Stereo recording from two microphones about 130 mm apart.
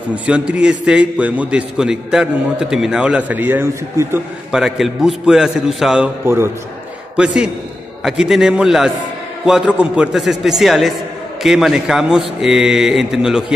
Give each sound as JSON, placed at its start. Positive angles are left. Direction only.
{"t": 0.1, "sound": "a man's voice", "side_deg": -10}
{"t": 4.5, "sound": "a man's voice", "side_deg": -5}
{"t": 6.2, "sound": "a man's voice", "side_deg": -20}
{"t": 7.2, "sound": "a man's voice", "side_deg": -5}